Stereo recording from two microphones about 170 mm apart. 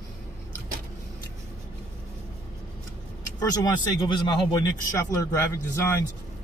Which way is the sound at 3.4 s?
25° left (ahead or behind).